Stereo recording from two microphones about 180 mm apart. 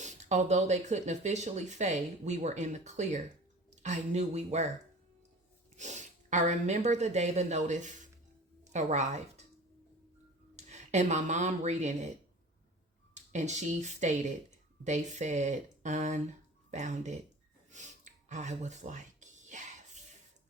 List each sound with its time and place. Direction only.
0.0 s speech: 40° right (ahead or behind)
5.7 s a woman's voice: 40° right (ahead or behind)
10.5 s speech: 40° right (ahead or behind)
13.1 s speech: 40° right (ahead or behind)
17.7 s a sound: 40° right (ahead or behind)